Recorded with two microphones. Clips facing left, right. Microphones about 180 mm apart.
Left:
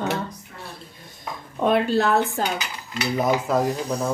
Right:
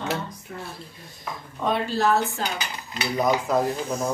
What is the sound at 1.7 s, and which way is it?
Speech, 60° left (ahead or behind).